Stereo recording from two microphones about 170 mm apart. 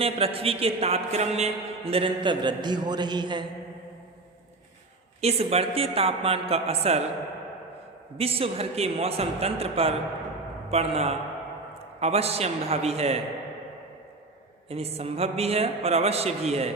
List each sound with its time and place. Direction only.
0.0 s a man's voice: 35° right (ahead or behind)
5.2 s a man's voice: 35° right (ahead or behind)
8.2 s a man's voice: 35° right (ahead or behind)
14.7 s a man's voice: 35° right (ahead or behind)